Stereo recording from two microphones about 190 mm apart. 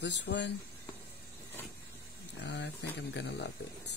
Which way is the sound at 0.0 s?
70° left (ahead or behind).